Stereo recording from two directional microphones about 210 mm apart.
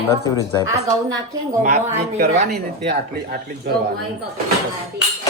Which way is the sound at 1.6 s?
30° right (ahead or behind).